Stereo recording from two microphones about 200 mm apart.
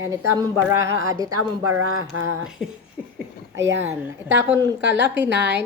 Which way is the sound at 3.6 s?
70° right (ahead or behind).